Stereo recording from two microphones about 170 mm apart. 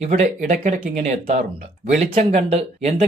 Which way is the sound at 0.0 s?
45° right (ahead or behind).